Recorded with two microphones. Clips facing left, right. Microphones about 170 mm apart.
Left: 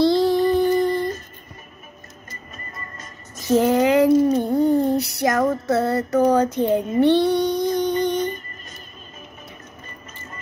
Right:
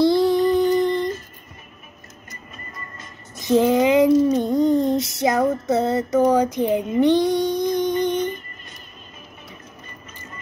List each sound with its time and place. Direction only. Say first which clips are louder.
0.0 s humming: even; 20° right (ahead or behind)
3.3 s child singing: even; 20° right (ahead or behind)
4.7 s female singing: even; 20° right (ahead or behind)
7.0 s music: even; 15° right (ahead or behind)